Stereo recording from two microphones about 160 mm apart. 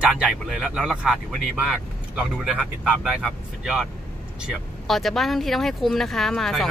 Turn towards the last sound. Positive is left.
turn(degrees=0)  # may be behind; listen again after turning